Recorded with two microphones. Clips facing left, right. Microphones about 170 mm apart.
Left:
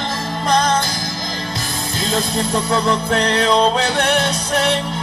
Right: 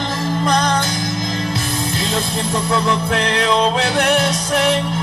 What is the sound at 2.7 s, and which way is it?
Music, 35° left (ahead or behind).